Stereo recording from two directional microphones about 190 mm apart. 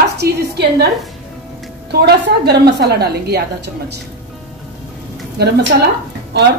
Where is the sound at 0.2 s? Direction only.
60° right (ahead or behind).